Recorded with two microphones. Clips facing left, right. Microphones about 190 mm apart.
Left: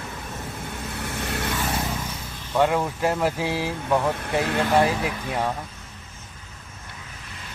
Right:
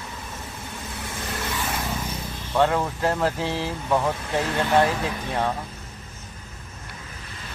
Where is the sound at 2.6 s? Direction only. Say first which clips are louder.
Even; 10° left (ahead or behind).